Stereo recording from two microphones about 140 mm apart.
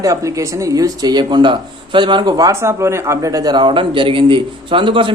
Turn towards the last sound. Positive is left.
turn(degrees=-35)  # may be behind; listen again after turning